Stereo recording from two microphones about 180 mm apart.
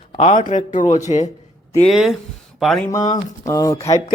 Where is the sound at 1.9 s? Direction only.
Centre (ahead or behind).